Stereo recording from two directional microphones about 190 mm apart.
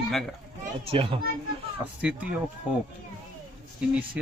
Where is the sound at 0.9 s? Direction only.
30° right (ahead or behind).